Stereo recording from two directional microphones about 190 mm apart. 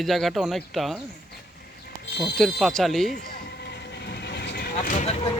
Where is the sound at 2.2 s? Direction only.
Centre (ahead or behind).